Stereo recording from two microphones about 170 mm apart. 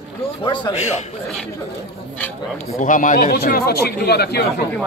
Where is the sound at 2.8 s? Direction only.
50° left (ahead or behind); by 4.4 s 70° left (ahead or behind).